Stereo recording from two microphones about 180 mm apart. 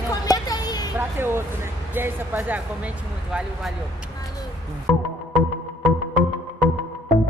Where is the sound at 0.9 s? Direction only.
10° right (ahead or behind).